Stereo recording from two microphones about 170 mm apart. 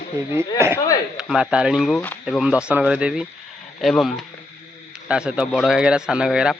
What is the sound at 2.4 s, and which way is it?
Speech, 5° right (ahead or behind).